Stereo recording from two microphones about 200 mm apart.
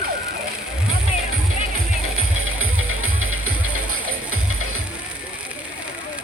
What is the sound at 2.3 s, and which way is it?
Music, 90° right.